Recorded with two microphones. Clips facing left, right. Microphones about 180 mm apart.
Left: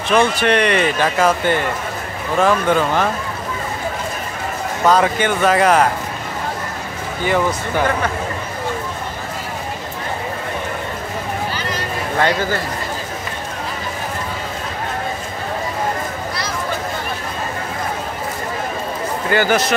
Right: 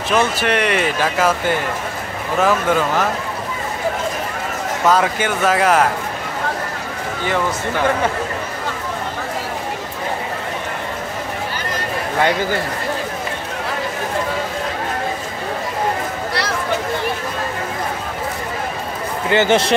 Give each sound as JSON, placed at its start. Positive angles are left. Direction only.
{"t": 0.1, "sound": "speech", "side_deg": -5}
{"t": 4.8, "sound": "speech", "side_deg": -5}
{"t": 19.3, "sound": "speech", "side_deg": -25}